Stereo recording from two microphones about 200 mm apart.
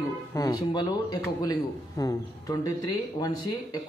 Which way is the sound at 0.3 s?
20° left (ahead or behind).